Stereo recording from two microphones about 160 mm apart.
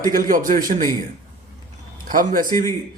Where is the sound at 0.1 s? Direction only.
60° right (ahead or behind).